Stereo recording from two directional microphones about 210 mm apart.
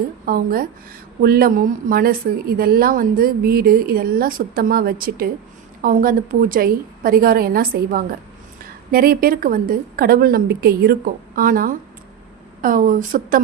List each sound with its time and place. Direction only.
0.3 s a woman's voice: 45° right (ahead or behind)